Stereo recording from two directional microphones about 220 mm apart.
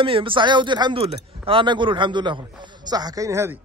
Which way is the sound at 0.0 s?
25° right (ahead or behind).